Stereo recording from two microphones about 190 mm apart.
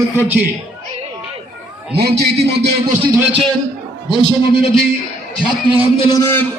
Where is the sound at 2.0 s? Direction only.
55° right (ahead or behind).